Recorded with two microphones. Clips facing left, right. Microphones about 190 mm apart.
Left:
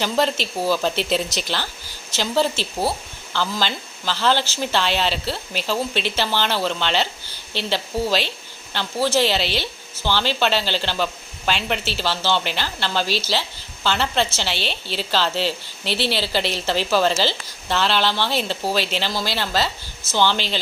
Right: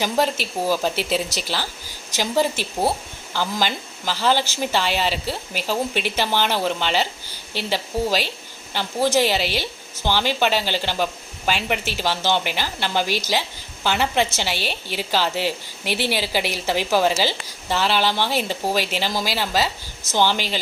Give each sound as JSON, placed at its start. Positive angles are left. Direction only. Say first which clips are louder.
{"t": 0.0, "sound": "a woman's voice", "louder": "even", "side_deg": -10}